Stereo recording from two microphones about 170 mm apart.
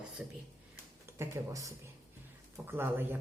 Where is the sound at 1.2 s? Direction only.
20° right (ahead or behind).